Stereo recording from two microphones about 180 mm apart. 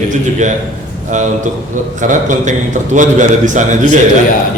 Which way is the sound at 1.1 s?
45° right (ahead or behind).